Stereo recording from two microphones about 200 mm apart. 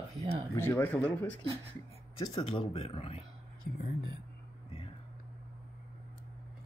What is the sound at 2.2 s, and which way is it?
Speech, 25° left (ahead or behind).